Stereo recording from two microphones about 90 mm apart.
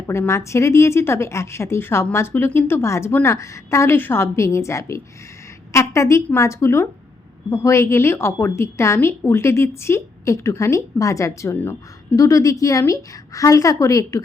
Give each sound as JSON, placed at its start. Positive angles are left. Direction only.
{"t": 0.1, "sound": "a woman's voice", "side_deg": 30}